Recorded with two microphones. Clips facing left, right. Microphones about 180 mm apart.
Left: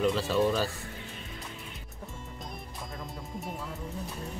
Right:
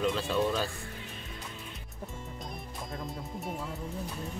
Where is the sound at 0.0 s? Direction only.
Centre (ahead or behind).